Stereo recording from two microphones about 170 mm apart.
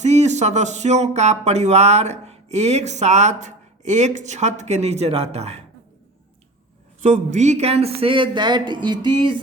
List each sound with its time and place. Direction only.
0.0 s speech: 40° right (ahead or behind)
7.0 s speech: 45° right (ahead or behind); by 9.4 s 30° right (ahead or behind)